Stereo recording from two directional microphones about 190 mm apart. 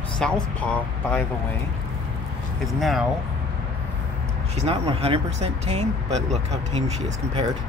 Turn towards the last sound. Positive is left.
turn(degrees=-35)  # may be behind; listen again after turning